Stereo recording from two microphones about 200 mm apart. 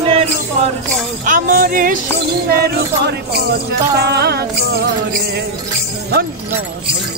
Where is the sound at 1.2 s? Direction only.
40° right (ahead or behind).